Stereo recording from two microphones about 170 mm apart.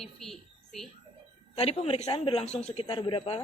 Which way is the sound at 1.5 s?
35° left (ahead or behind).